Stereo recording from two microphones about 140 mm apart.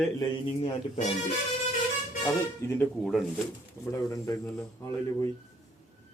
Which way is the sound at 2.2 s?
20° left (ahead or behind).